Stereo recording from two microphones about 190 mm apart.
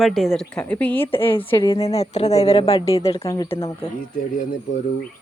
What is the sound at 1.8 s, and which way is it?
Speech, 35° left (ahead or behind).